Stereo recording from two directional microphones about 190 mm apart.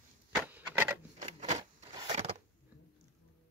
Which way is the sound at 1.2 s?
30° right (ahead or behind).